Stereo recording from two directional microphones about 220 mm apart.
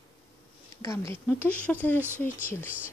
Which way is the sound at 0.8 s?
10° left (ahead or behind).